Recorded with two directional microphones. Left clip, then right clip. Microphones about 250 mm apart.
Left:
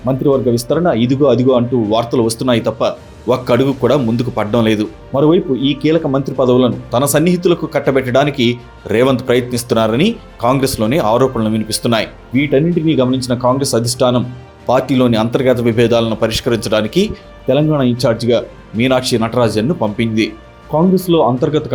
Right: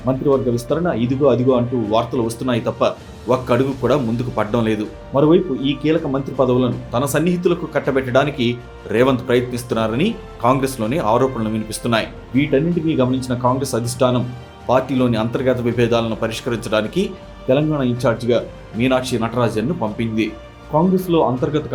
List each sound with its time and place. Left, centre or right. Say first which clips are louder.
0.0 s speech: left 4 dB; left